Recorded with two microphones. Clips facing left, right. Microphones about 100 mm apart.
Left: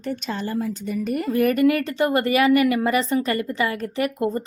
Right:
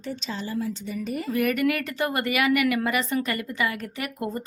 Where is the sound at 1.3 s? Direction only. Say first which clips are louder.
Left 5 dB; 35° left (ahead or behind).